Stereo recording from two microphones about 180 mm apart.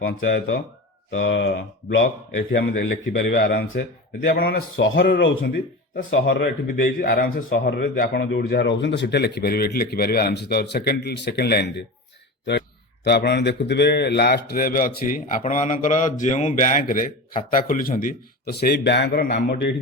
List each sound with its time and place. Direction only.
0.0 s a man's voice: 75° left (ahead or behind)
5.1 s a man's voice: 90° left
7.0 s speech: 55° left (ahead or behind)
13.1 s a man's voice: 65° left (ahead or behind)